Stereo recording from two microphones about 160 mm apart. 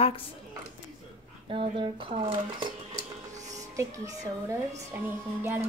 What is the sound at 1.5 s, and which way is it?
Speech, 30° right (ahead or behind).